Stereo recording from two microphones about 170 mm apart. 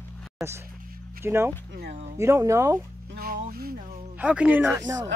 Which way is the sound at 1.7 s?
80° right.